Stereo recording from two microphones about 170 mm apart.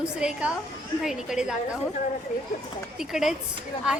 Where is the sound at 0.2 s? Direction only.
5° right (ahead or behind).